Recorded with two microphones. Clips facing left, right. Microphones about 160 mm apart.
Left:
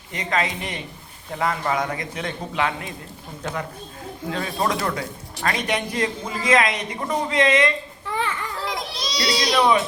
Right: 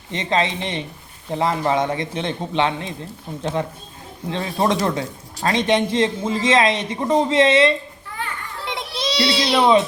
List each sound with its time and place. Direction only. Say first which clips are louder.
0.1 s a woman's voice: right 4 dB; 25° right (ahead or behind)
8.6 s children playing: right 7 dB; 25° right (ahead or behind)